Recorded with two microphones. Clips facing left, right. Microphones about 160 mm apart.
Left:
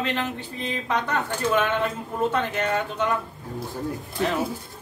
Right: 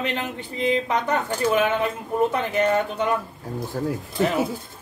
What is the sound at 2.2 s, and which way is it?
Speech, 15° right (ahead or behind).